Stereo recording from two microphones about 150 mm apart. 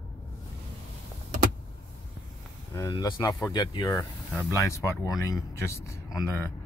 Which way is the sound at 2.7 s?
25° left (ahead or behind).